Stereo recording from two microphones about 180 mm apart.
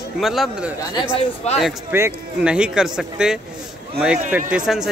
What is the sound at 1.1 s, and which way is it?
Speech, 35° left (ahead or behind).